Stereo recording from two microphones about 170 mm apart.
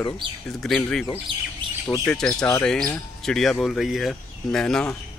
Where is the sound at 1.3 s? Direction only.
90° right.